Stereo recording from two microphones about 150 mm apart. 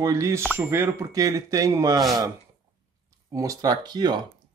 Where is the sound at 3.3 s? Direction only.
25° right (ahead or behind).